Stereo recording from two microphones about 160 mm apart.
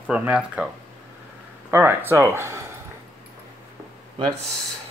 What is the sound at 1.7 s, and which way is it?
Speech, 15° right (ahead or behind).